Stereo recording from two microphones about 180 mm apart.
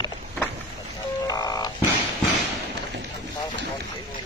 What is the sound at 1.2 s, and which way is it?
Frog, 20° left (ahead or behind).